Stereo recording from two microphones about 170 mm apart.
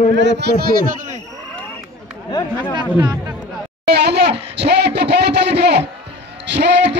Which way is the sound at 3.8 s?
75° right (ahead or behind).